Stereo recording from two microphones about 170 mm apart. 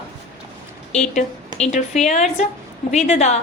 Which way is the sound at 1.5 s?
40° left (ahead or behind).